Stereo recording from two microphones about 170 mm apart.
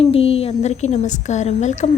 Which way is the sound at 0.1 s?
35° left (ahead or behind).